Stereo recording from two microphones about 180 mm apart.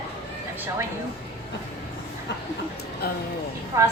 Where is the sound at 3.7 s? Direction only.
20° right (ahead or behind).